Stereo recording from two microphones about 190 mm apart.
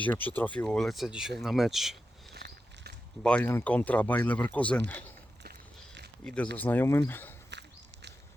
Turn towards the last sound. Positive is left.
turn(degrees=10)  # may be behind; listen again after turning